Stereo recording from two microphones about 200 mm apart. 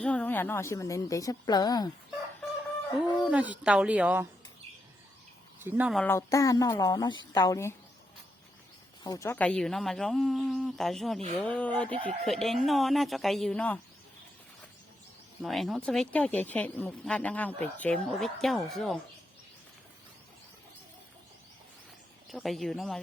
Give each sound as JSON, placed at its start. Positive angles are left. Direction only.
{"t": 0.0, "sound": "a woman's voice", "side_deg": 5}
{"t": 3.2, "sound": "speech", "side_deg": -5}
{"t": 5.6, "sound": "speech", "side_deg": -10}
{"t": 6.0, "sound": "a woman's voice", "side_deg": 15}
{"t": 9.0, "sound": "speech", "side_deg": 15}
{"t": 15.4, "sound": "speech", "side_deg": 0}
{"t": 22.3, "sound": "speech", "side_deg": 0}